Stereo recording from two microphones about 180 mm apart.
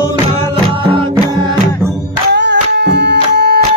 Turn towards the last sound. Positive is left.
turn(degrees=-65)  # may be behind; listen again after turning